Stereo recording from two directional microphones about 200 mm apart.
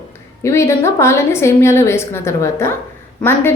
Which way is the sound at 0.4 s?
15° left (ahead or behind).